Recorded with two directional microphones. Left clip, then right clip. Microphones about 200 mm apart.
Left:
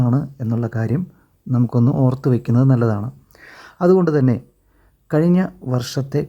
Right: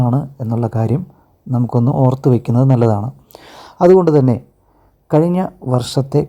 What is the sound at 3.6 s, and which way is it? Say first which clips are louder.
Speech: right 6 dB; 5° right (ahead or behind).